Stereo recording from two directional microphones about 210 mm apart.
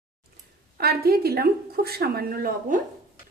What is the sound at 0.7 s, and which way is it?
A woman's voice, 45° right (ahead or behind).